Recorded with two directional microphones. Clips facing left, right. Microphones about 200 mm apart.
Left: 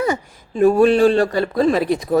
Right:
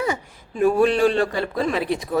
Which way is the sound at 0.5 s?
40° left (ahead or behind).